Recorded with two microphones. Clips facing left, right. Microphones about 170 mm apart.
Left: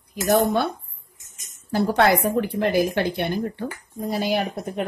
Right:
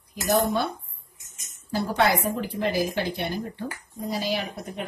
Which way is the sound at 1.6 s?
65° left (ahead or behind).